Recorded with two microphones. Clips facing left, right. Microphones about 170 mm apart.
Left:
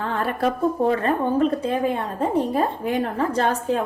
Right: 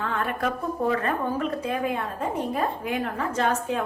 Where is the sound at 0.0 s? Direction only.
35° left (ahead or behind).